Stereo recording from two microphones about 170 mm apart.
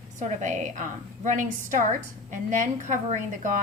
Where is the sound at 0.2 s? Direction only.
45° right (ahead or behind).